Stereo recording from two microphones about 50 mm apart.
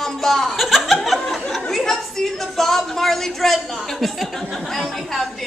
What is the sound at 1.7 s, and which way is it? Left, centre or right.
Speech, centre.